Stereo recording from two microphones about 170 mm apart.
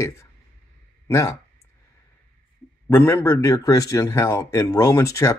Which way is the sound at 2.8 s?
15° left (ahead or behind).